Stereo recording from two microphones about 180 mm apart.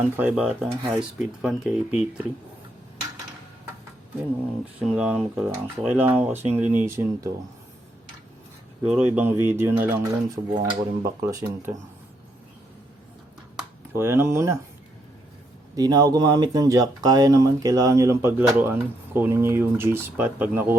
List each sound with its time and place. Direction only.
0.0 s speech: 10° right (ahead or behind)
4.8 s speech: 5° right (ahead or behind)
8.9 s speech: 10° right (ahead or behind)
13.9 s speech: 15° right (ahead or behind)
15.7 s speech: 20° right (ahead or behind)